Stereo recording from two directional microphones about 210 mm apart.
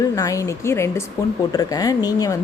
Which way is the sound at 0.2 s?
15° left (ahead or behind).